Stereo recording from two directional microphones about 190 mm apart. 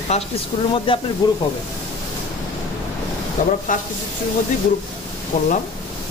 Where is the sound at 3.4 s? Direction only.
45° left (ahead or behind).